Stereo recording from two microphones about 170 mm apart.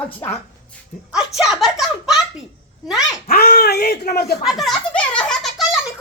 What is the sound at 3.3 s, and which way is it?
Speech, 60° left (ahead or behind).